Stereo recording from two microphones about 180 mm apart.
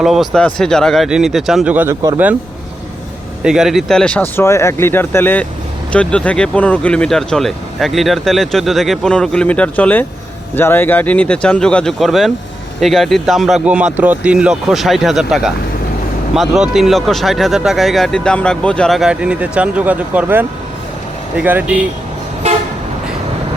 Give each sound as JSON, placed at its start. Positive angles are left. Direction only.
{"t": 0.0, "sound": "speech", "side_deg": 0}
{"t": 3.4, "sound": "speech", "side_deg": -5}
{"t": 22.4, "sound": "toot", "side_deg": -35}